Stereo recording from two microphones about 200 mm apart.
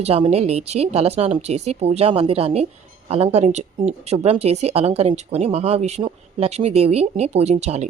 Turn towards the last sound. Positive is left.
turn(degrees=-35)  # may be behind; listen again after turning